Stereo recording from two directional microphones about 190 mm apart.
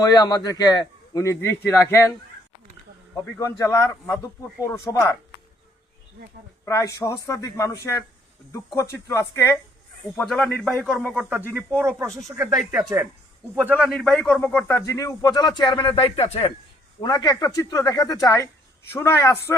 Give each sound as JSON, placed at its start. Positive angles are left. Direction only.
{"t": 0.0, "sound": "speech", "side_deg": 20}
{"t": 3.6, "sound": "speech", "side_deg": 15}
{"t": 6.7, "sound": "speech", "side_deg": 15}
{"t": 10.2, "sound": "speech", "side_deg": 0}
{"t": 17.0, "sound": "speech", "side_deg": 20}